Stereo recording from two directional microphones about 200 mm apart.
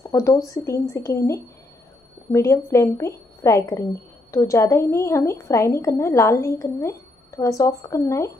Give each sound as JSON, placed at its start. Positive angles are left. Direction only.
{"t": 0.0, "sound": "a woman's voice", "side_deg": 15}